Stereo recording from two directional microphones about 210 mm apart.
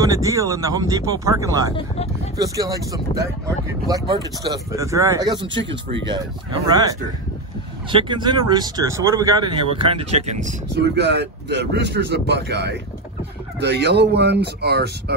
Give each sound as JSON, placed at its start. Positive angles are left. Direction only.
{"t": 0.0, "sound": "speech", "side_deg": -15}
{"t": 5.6, "sound": "speech", "side_deg": -60}
{"t": 6.7, "sound": "speech", "side_deg": -20}
{"t": 10.7, "sound": "speech", "side_deg": -55}